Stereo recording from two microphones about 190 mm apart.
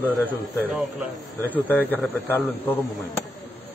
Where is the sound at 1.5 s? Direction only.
10° left (ahead or behind).